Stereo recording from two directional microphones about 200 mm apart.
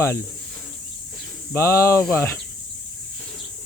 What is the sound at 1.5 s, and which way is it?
Speech, 15° left (ahead or behind).